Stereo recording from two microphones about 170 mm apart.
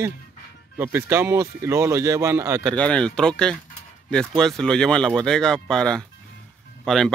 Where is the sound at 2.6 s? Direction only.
5° left (ahead or behind).